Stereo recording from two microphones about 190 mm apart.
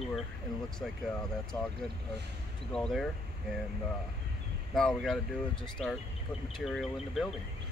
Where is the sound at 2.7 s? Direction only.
Centre (ahead or behind).